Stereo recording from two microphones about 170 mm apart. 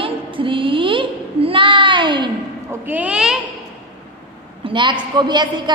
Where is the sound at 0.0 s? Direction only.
30° right (ahead or behind).